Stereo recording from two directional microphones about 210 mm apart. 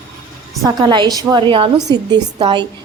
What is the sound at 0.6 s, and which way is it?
A woman's voice, 20° right (ahead or behind).